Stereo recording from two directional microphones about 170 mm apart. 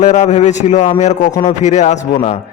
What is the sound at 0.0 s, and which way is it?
A man's voice, 45° left (ahead or behind).